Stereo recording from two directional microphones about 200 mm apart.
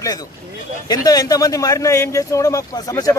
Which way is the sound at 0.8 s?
20° left (ahead or behind).